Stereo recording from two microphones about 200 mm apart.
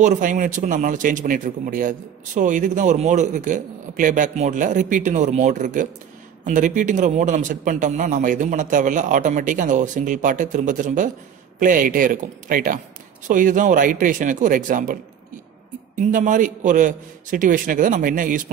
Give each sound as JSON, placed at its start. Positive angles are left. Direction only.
{"t": 0.0, "sound": "a man's voice", "side_deg": -40}
{"t": 16.0, "sound": "a man's voice", "side_deg": -40}